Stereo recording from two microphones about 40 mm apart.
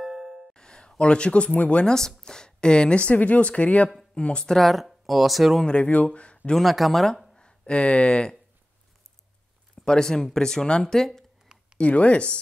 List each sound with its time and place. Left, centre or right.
0.0 s music: centre
0.6 s speech: centre
1.9 s speech: centre
4.5 s speech: centre
5.7 s speech: left
6.6 s speech: centre
7.3 s speech: left
9.8 s speech: centre
11.8 s speech: left